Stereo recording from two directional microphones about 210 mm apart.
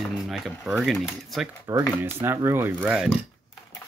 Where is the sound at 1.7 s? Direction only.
15° right (ahead or behind).